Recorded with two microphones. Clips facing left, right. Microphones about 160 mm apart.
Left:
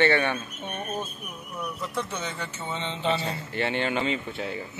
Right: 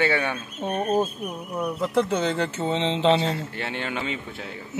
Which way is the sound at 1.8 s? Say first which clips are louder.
Right 11 dB; 70° right (ahead or behind).